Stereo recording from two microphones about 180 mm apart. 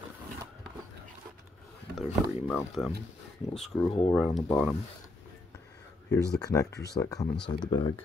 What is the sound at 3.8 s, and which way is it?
Speech, 30° left (ahead or behind).